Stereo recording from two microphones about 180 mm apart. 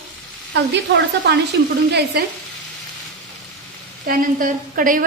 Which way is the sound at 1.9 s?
65° right (ahead or behind).